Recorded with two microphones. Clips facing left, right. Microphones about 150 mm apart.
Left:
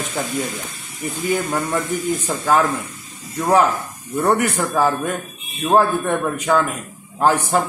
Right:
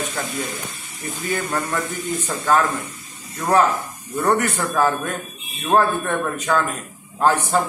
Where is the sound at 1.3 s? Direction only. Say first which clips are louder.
Left 3 dB; 10° left (ahead or behind).